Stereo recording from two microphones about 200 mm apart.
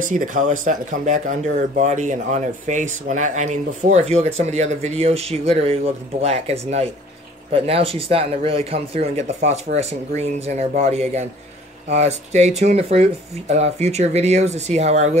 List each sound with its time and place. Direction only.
0.0 s speech: 40° right (ahead or behind)